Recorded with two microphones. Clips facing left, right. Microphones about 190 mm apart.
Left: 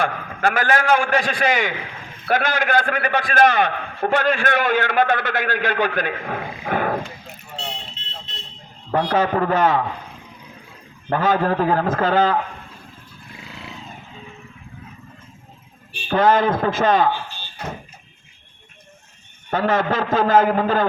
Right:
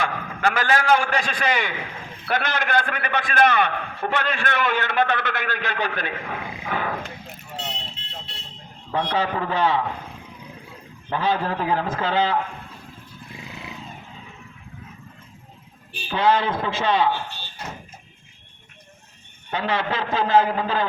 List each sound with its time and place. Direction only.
0.0 s a man's voice: 50° left (ahead or behind)
8.9 s a man's voice: 45° left (ahead or behind)
11.1 s a man's voice: 45° left (ahead or behind)
16.0 s a man's voice: 45° left (ahead or behind)
19.5 s a man's voice: 45° left (ahead or behind)